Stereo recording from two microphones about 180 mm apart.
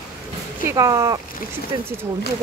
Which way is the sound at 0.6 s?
20° right (ahead or behind).